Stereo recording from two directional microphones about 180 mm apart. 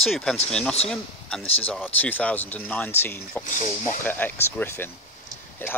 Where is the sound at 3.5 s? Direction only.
45° left (ahead or behind).